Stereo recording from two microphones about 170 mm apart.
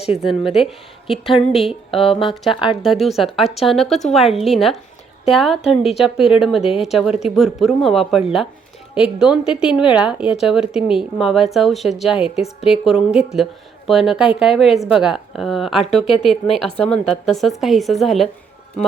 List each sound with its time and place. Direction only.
0.2 s speech: centre (ahead or behind)
1.9 s speech: 30° left (ahead or behind)
2.8 s speech: centre (ahead or behind)
5.6 s speech: 35° left (ahead or behind)
6.3 s speech: centre (ahead or behind)
6.6 s speech: 35° left (ahead or behind)
6.8 s speech: centre (ahead or behind)